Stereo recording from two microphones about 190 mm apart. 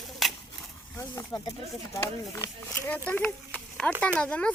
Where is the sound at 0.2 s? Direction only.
Centre (ahead or behind).